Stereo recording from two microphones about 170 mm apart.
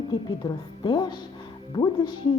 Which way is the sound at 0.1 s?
25° left (ahead or behind).